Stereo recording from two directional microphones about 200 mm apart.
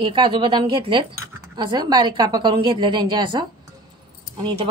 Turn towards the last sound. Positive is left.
turn(degrees=-25)  # may be behind; listen again after turning